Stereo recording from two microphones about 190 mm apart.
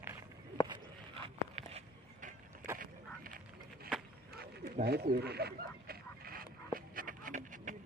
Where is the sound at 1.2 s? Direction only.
30° right (ahead or behind).